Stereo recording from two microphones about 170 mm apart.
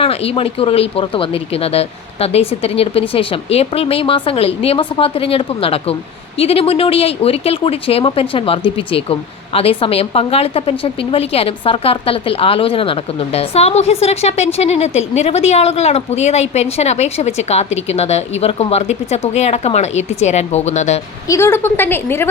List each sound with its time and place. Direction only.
0.0 s a woman's voice: 35° left (ahead or behind)
21.2 s a woman's voice: 15° left (ahead or behind)